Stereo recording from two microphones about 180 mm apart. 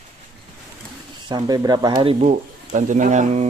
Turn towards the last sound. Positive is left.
turn(degrees=-40)  # may be behind; listen again after turning